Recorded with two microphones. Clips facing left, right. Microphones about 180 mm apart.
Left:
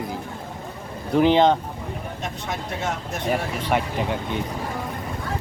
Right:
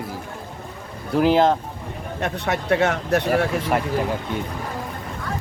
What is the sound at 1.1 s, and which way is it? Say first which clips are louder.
Speech: even; 5° right (ahead or behind).